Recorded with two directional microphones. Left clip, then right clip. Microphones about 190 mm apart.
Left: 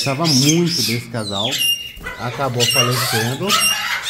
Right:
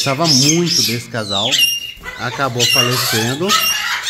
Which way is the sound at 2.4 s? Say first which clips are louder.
Right 3 dB; 20° right (ahead or behind).